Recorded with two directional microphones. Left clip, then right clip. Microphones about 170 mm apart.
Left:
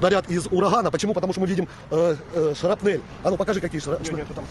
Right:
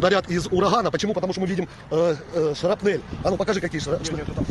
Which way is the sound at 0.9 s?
20° left (ahead or behind).